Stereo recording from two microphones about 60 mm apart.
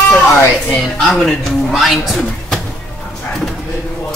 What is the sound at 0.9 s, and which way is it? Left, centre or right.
Speech, centre.